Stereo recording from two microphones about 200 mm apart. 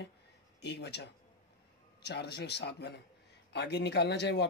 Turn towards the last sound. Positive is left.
turn(degrees=60)  # may be behind; listen again after turning